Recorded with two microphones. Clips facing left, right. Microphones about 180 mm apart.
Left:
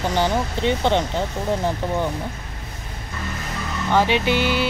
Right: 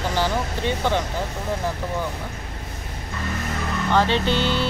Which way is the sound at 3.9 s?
10° left (ahead or behind).